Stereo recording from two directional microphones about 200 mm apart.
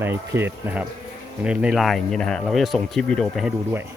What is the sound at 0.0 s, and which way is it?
A man's voice, 10° right (ahead or behind).